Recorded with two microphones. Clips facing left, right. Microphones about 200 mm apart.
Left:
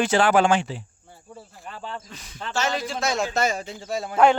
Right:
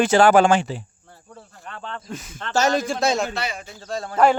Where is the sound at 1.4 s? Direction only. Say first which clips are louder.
Even; 5° left (ahead or behind).